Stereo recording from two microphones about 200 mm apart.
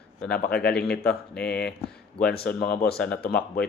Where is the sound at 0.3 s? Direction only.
50° left (ahead or behind).